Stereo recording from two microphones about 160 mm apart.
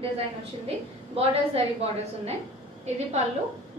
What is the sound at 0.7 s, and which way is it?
A woman's voice, 40° right (ahead or behind).